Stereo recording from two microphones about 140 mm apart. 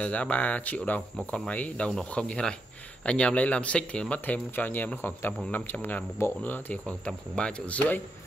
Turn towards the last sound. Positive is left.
turn(degrees=10)  # may be behind; listen again after turning